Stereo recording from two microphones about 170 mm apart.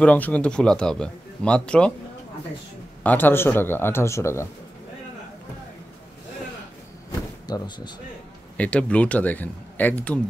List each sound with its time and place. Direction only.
0.0 s speech: 10° left (ahead or behind)
3.0 s speech: 10° left (ahead or behind)
7.4 s speech: 25° left (ahead or behind)
8.5 s speech: 10° left (ahead or behind)